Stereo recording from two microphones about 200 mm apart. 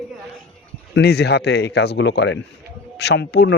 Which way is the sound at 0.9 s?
55° left (ahead or behind).